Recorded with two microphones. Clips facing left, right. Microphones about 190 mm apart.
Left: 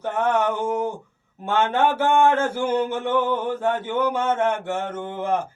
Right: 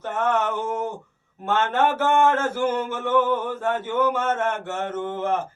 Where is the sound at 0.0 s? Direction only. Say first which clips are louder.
Left 2 dB; 10° left (ahead or behind).